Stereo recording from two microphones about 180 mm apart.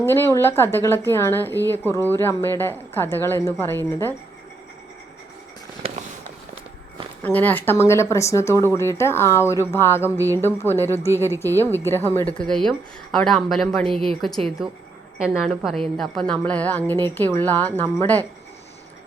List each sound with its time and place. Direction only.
0.0 s speech: 15° left (ahead or behind)
5.8 s a sound: 35° right (ahead or behind)
7.2 s a woman's voice: 10° left (ahead or behind)